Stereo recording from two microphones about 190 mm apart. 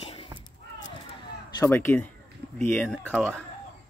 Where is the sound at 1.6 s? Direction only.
10° left (ahead or behind).